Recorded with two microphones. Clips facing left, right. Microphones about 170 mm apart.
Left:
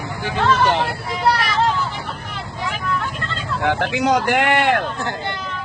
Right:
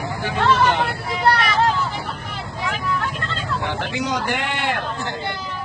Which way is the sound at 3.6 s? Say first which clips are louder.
Left 9 dB; 65° left (ahead or behind).